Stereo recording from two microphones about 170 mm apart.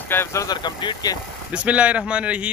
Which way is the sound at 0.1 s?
15° left (ahead or behind).